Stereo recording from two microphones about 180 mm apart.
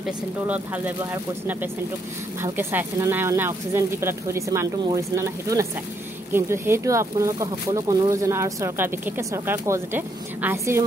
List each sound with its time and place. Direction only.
0.0 s speech: 10° right (ahead or behind)